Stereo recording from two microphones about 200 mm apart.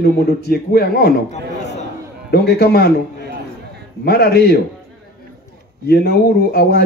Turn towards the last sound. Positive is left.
turn(degrees=55)  # may be behind; listen again after turning